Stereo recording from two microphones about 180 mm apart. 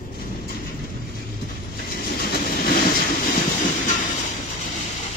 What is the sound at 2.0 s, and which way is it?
Train, 55° left (ahead or behind).